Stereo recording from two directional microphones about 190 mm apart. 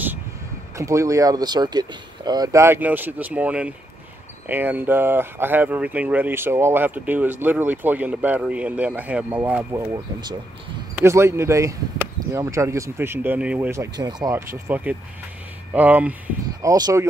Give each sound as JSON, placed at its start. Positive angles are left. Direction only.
{"t": 0.7, "sound": "speech", "side_deg": -15}
{"t": 16.6, "sound": "speech", "side_deg": -20}